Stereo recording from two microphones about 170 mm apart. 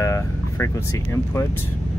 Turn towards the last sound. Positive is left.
turn(degrees=20)  # may be behind; listen again after turning